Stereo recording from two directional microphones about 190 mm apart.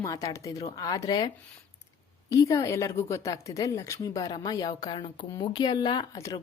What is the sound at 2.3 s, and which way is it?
A woman's voice, 20° left (ahead or behind).